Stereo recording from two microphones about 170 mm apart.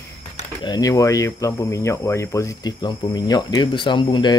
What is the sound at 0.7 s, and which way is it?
Speech, 20° left (ahead or behind).